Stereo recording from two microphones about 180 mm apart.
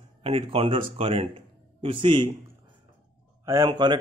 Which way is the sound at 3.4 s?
20° right (ahead or behind).